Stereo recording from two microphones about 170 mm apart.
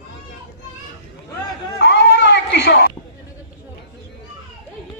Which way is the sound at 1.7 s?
85° left.